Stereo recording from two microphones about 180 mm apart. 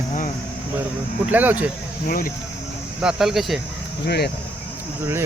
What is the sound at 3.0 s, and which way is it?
Speech, centre (ahead or behind).